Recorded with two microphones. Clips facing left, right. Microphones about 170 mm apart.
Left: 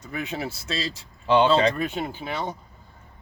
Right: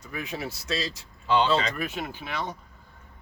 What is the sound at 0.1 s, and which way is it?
Speech, 25° left (ahead or behind).